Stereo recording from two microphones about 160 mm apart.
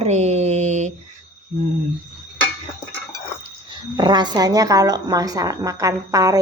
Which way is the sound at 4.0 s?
25° right (ahead or behind).